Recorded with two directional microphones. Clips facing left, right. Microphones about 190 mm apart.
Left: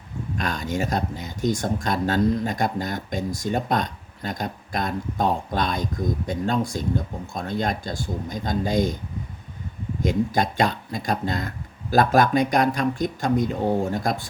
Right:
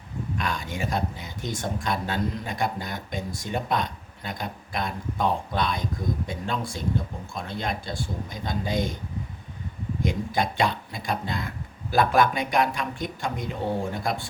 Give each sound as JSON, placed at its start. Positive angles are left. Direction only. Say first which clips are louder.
{"t": 0.3, "sound": "speech", "louder": "left 5 dB", "side_deg": 40}
{"t": 10.0, "sound": "speech", "louder": "left 4 dB", "side_deg": 40}